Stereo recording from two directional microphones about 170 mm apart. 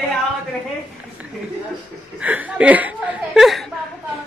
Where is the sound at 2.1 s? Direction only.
10° right (ahead or behind).